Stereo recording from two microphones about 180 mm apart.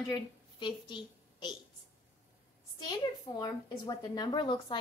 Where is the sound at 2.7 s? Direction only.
25° left (ahead or behind).